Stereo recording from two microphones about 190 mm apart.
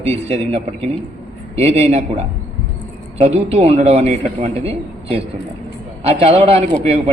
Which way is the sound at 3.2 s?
30° right (ahead or behind).